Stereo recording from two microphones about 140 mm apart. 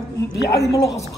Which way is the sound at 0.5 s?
25° left (ahead or behind).